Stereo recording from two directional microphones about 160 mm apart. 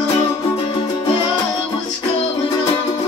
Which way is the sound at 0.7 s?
30° left (ahead or behind).